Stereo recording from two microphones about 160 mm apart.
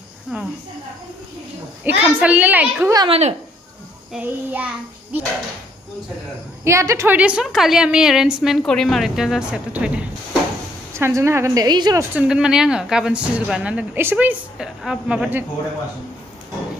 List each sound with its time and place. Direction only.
0.3 s speech: 10° right (ahead or behind)
1.9 s speech: 10° right (ahead or behind)
3.1 s speech: 40° right (ahead or behind)
4.1 s speech: 10° right (ahead or behind)
6.6 s a woman's voice: 20° right (ahead or behind)
12.2 s speech: 5° right (ahead or behind)